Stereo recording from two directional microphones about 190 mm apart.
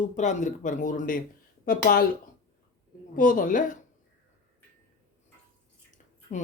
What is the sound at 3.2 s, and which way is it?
Speech, 45° left (ahead or behind).